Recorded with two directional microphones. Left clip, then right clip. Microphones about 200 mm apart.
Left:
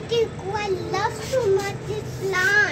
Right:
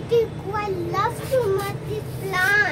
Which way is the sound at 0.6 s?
20° left (ahead or behind).